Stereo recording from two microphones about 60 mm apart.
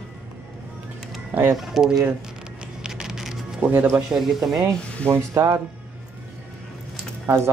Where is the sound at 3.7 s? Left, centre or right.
Right.